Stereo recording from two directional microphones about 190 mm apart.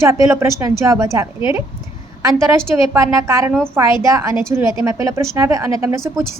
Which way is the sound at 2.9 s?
15° right (ahead or behind).